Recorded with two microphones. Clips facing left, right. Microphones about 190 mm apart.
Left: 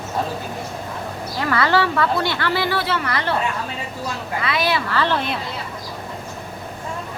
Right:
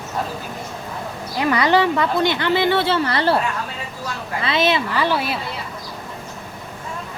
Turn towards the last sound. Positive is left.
turn(degrees=-10)  # may be behind; listen again after turning